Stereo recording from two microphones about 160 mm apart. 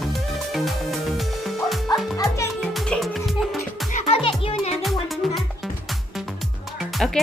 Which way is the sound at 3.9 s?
40° left (ahead or behind).